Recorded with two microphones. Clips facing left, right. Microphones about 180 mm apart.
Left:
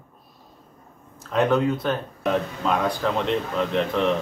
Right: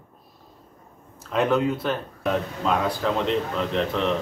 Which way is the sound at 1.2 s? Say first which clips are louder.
Left 1 dB; 5° right (ahead or behind).